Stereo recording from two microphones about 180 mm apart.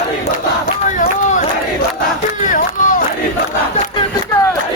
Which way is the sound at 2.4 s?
45° left (ahead or behind).